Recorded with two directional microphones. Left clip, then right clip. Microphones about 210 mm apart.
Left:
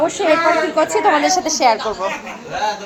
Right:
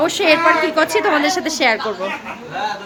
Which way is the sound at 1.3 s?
75° right (ahead or behind).